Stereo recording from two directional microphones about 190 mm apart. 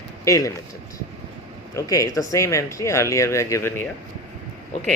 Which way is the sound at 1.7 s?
15° left (ahead or behind).